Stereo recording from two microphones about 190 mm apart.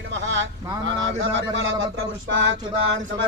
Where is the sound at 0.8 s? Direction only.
90° right.